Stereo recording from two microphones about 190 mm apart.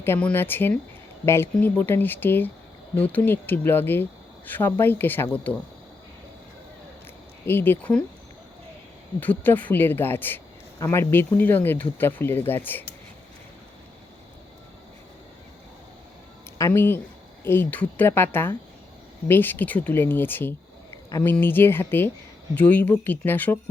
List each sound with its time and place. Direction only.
0.0 s speech: 10° left (ahead or behind)
7.4 s speech: 10° left (ahead or behind)
9.2 s speech: 10° left (ahead or behind)
16.6 s speech: 15° left (ahead or behind)